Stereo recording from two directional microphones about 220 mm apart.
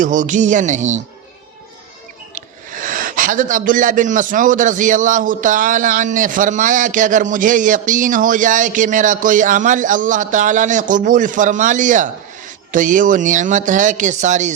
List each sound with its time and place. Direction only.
0.0 s speech: 35° right (ahead or behind)
2.3 s speech: 35° right (ahead or behind)